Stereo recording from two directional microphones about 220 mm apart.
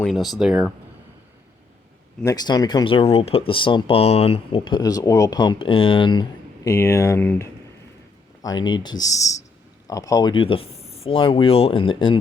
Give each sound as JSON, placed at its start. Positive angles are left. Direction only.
{"t": 0.0, "sound": "speech", "side_deg": 0}
{"t": 2.2, "sound": "speech", "side_deg": 20}